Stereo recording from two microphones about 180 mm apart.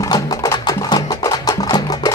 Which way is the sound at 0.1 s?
20° left (ahead or behind).